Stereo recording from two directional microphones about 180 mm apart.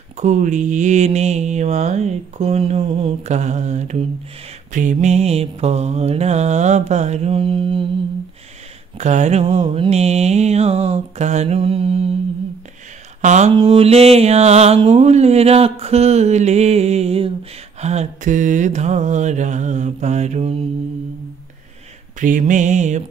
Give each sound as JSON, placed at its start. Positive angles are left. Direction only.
{"t": 0.2, "sound": "mantra", "side_deg": -45}
{"t": 8.9, "sound": "mantra", "side_deg": -40}
{"t": 13.2, "sound": "speech", "side_deg": -40}
{"t": 13.6, "sound": "mantra", "side_deg": -30}
{"t": 22.2, "sound": "music", "side_deg": -45}